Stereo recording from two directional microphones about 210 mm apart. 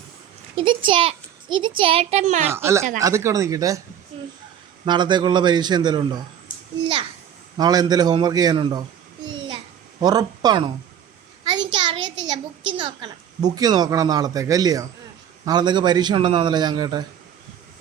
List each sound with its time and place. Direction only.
0.5 s a woman's voice: 25° right (ahead or behind)
2.5 s speech: 10° right (ahead or behind)
4.9 s a woman's voice: 20° right (ahead or behind)
7.5 s a woman's voice: 20° right (ahead or behind)
10.0 s a woman's voice: 20° right (ahead or behind)
11.7 s a woman's voice: 20° right (ahead or behind)